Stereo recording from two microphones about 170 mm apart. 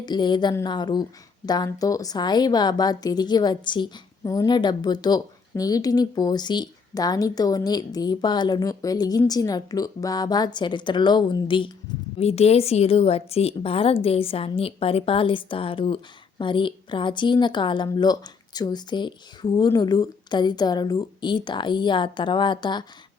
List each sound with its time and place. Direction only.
0.0 s a woman's voice: 25° left (ahead or behind)
12.2 s a woman's voice: 40° left (ahead or behind)